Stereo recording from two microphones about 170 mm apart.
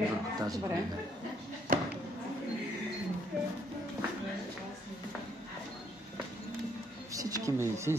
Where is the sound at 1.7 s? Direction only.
55° right (ahead or behind).